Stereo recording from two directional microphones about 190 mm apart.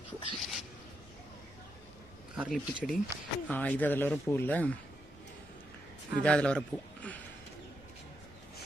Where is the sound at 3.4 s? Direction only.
10° left (ahead or behind).